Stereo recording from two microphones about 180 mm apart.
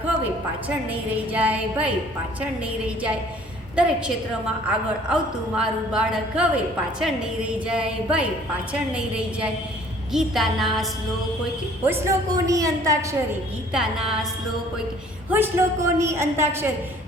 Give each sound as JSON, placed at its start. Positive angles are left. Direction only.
{"t": 0.7, "sound": "a woman's voice", "side_deg": -10}
{"t": 11.8, "sound": "a woman's voice", "side_deg": -15}
{"t": 13.7, "sound": "a woman's voice", "side_deg": -5}
{"t": 15.3, "sound": "a woman's voice", "side_deg": -10}